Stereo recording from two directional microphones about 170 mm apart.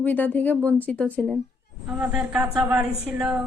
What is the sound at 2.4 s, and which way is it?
Speech, 20° right (ahead or behind).